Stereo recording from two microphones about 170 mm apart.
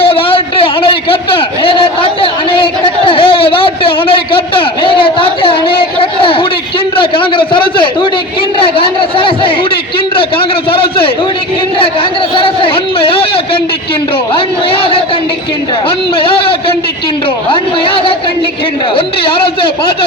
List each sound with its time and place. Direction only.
0.0 s a man's voice: 35° left (ahead or behind)
11.8 s a sound: 30° left (ahead or behind)
14.3 s a man's voice: 30° left (ahead or behind)